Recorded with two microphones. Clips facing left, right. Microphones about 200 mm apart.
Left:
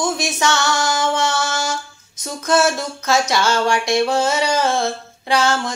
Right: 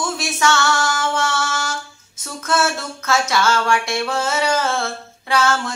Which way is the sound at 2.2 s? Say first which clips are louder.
Left 4 dB; 15° left (ahead or behind).